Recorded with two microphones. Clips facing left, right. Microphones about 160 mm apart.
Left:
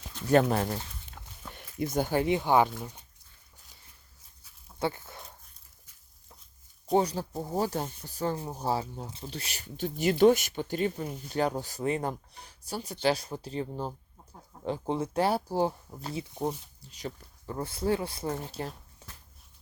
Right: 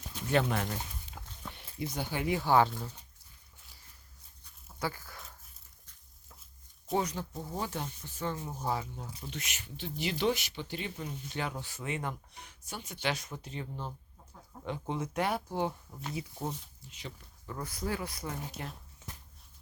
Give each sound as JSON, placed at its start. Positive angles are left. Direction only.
{"t": 0.3, "sound": "speech", "side_deg": 40}
{"t": 1.2, "sound": "a sound", "side_deg": -10}
{"t": 1.5, "sound": "speech", "side_deg": 45}
{"t": 2.2, "sound": "speech", "side_deg": 20}
{"t": 4.8, "sound": "dog", "side_deg": 25}
{"t": 6.9, "sound": "speech", "side_deg": 30}
{"t": 16.3, "sound": "speech", "side_deg": 15}
{"t": 16.9, "sound": "speech", "side_deg": 35}
{"t": 18.5, "sound": "zipper", "side_deg": 35}